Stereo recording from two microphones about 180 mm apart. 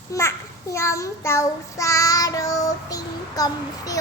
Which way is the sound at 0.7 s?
15° left (ahead or behind).